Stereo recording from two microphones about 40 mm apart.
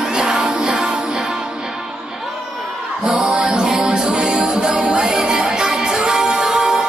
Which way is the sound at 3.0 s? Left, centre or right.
Centre.